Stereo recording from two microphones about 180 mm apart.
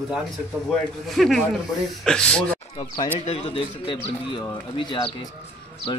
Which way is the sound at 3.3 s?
30° left (ahead or behind).